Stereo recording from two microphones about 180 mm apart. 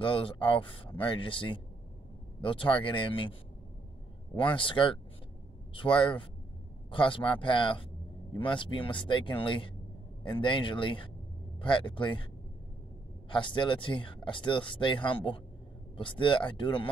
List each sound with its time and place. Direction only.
0.0 s speech: 30° left (ahead or behind)
4.4 s speech: 30° left (ahead or behind)
13.3 s speech: 25° left (ahead or behind)